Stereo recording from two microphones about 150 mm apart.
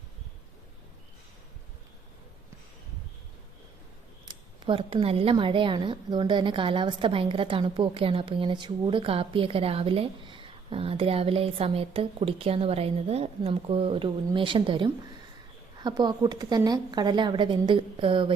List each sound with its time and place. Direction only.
4.3 s a woman's voice: 35° right (ahead or behind)